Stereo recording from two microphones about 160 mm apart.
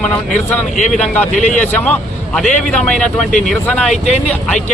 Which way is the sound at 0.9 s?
5° left (ahead or behind).